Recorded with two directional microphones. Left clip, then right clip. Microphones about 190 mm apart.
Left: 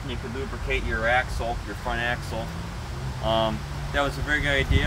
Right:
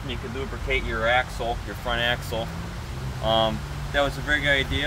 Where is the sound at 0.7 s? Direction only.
15° right (ahead or behind).